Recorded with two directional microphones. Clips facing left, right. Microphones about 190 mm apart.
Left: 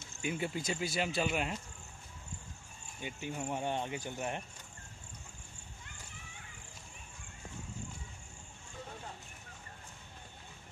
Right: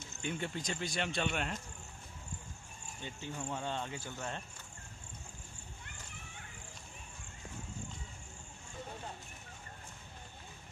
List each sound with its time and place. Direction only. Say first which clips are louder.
0.2 s speech: left 3 dB; 5° left (ahead or behind)
3.0 s speech: left 3 dB; 15° left (ahead or behind)